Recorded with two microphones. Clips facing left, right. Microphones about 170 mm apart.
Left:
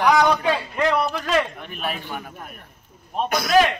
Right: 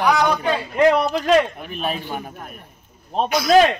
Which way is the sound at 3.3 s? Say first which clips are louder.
Right 6 dB; 55° left (ahead or behind).